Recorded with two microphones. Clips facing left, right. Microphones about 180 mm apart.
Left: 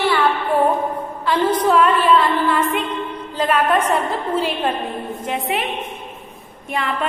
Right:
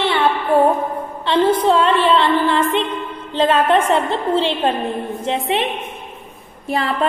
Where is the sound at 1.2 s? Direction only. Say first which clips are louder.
Right 3 dB; 25° right (ahead or behind).